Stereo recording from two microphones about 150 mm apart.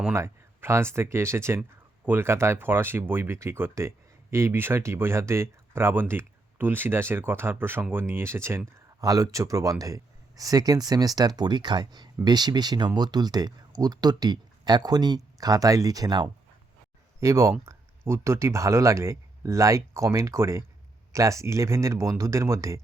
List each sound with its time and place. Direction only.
0.0 s speech: 15° right (ahead or behind)